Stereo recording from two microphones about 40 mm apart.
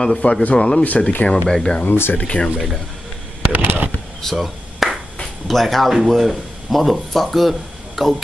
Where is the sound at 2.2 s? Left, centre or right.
Left.